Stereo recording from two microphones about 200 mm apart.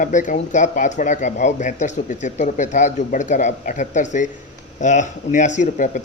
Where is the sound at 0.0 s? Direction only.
40° left (ahead or behind).